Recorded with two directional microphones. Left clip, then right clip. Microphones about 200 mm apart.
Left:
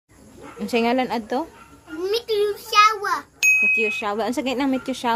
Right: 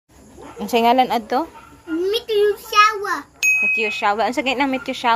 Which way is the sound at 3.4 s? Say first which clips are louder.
Even; centre (ahead or behind).